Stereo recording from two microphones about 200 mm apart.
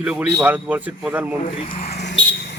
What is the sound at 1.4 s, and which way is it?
Speech, 40° left (ahead or behind).